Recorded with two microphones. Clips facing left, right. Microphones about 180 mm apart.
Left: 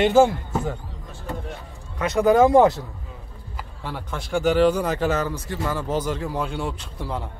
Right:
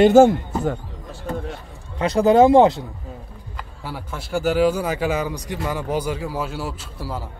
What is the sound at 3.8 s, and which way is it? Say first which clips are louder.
A man's voice: even; 5° right (ahead or behind).